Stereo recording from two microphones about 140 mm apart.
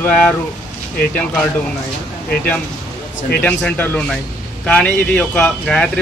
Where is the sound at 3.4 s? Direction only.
10° left (ahead or behind).